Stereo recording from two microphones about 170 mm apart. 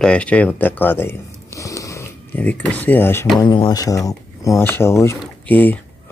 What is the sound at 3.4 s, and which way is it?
Speech, 25° left (ahead or behind).